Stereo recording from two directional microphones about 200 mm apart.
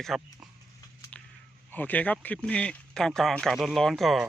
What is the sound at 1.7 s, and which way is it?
Speech, 10° left (ahead or behind).